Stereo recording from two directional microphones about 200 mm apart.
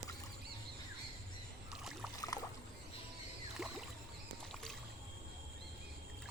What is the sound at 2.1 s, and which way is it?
Boat, 15° left (ahead or behind).